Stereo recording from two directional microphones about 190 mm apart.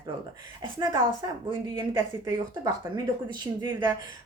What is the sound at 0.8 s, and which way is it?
Speech, 25° right (ahead or behind).